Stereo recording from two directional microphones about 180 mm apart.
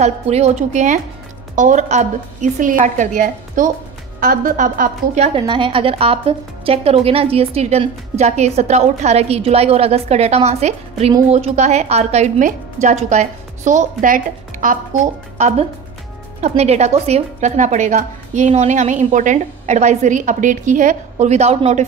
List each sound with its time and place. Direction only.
0.0 s a woman's voice: 35° right (ahead or behind)
5.2 s a woman's voice: 30° right (ahead or behind)